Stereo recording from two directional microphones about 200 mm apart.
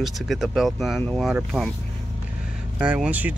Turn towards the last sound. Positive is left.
turn(degrees=-5)  # may be behind; listen again after turning